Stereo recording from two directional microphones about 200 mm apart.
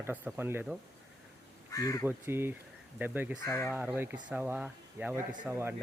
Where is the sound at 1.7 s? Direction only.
15° left (ahead or behind).